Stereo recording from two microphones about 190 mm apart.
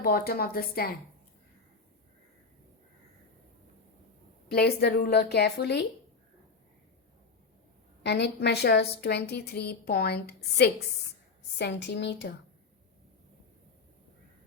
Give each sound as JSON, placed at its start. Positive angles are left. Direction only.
{"t": 0.0, "sound": "a woman's voice", "side_deg": 50}
{"t": 4.5, "sound": "a woman's voice", "side_deg": 55}
{"t": 8.0, "sound": "a woman's voice", "side_deg": 65}